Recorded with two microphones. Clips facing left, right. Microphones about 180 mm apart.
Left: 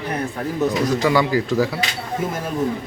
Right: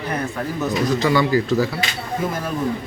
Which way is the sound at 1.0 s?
10° left (ahead or behind).